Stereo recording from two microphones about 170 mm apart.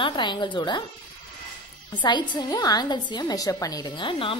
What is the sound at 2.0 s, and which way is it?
A woman's voice, 25° left (ahead or behind).